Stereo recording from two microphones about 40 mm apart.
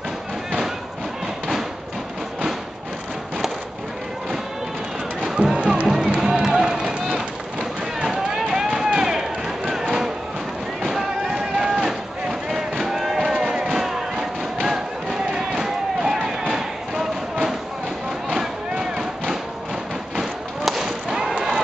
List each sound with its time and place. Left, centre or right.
5.2 s music: centre
5.6 s music: right
5.9 s music: centre
6.7 s run: centre
8.0 s music: centre
10.8 s boat: centre
11.3 s a sound: centre